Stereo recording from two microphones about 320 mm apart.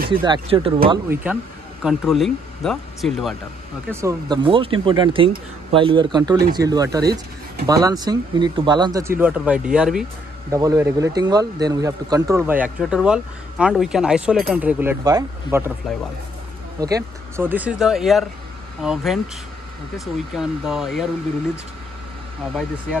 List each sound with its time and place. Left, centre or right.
0.1 s speech: centre
1.2 s speech: centre
3.9 s speech: centre
16.8 s speech: centre
20.3 s speech: centre